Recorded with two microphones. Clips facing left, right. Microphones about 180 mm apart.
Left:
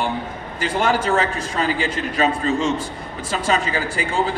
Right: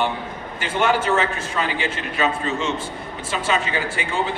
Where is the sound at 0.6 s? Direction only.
35° left (ahead or behind).